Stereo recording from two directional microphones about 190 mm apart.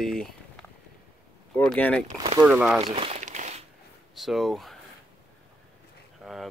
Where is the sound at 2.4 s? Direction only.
5° right (ahead or behind).